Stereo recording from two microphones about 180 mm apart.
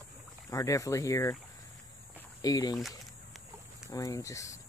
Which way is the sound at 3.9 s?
20° left (ahead or behind).